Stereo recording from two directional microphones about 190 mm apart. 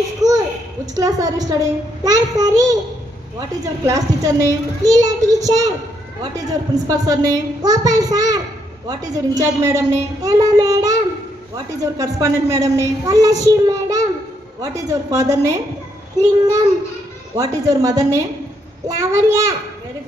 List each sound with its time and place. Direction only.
0.9 s a woman's voice: 20° right (ahead or behind)